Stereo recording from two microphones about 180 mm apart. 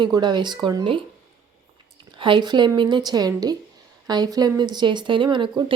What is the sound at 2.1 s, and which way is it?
A woman's voice, 25° right (ahead or behind).